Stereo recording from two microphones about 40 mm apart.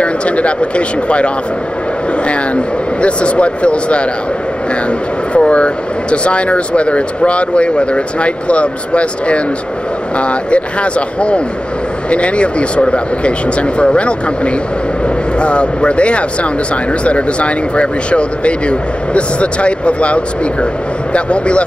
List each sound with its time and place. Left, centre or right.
0.0 s speech: left
5.3 s speech: left